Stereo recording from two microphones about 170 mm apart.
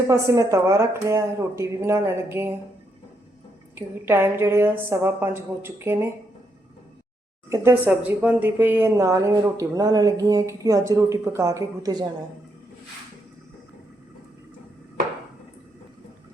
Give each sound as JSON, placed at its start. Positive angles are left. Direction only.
{"t": 0.1, "sound": "speech", "side_deg": -20}
{"t": 3.8, "sound": "speech", "side_deg": -15}
{"t": 7.5, "sound": "speech", "side_deg": -10}